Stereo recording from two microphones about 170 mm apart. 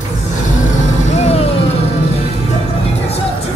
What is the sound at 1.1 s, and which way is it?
Vehicle, 40° left (ahead or behind).